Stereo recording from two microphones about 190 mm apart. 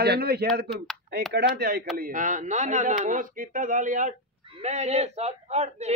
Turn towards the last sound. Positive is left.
turn(degrees=-35)  # may be behind; listen again after turning